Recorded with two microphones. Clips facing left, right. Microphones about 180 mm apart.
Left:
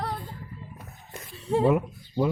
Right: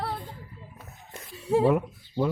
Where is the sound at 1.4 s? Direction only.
5° right (ahead or behind).